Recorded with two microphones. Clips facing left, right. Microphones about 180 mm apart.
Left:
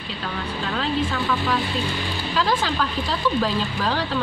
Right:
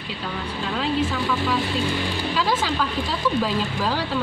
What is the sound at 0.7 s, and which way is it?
Speech, 5° right (ahead or behind).